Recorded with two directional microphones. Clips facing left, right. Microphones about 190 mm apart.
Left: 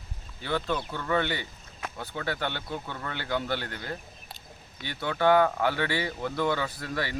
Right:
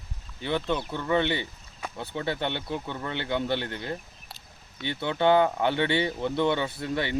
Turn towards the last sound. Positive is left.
turn(degrees=-25)  # may be behind; listen again after turning